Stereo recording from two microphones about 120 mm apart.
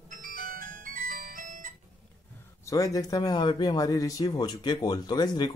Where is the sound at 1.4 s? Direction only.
90° right.